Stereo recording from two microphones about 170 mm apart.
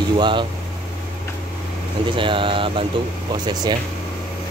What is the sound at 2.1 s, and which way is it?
Speech, 30° right (ahead or behind).